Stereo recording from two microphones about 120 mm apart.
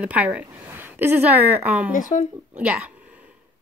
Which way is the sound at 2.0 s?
90° left.